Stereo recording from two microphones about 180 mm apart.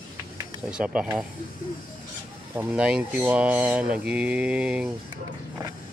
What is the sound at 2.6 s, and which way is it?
Speech, 5° right (ahead or behind).